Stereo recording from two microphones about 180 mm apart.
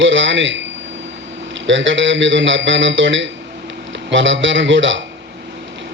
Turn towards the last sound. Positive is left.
turn(degrees=-90)